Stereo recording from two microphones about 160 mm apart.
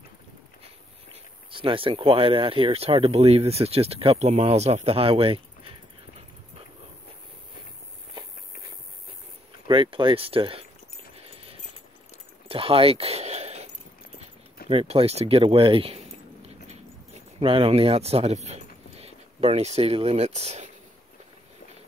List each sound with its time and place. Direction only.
1.6 s speech: 35° right (ahead or behind)
9.7 s speech: 30° right (ahead or behind)
12.4 s a sound: 35° right (ahead or behind)
14.7 s speech: 35° right (ahead or behind)